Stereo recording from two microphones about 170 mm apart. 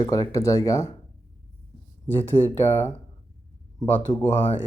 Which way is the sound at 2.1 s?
10° left (ahead or behind).